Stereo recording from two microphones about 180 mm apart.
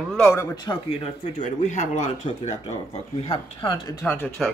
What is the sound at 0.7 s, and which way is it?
Speech, 35° left (ahead or behind).